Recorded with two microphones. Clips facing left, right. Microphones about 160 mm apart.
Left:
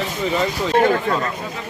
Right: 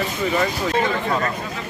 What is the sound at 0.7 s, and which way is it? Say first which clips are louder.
Speech: left 6 dB; 75° left (ahead or behind).